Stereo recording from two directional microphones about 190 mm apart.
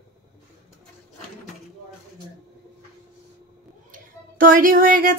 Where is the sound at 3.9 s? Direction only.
45° right (ahead or behind).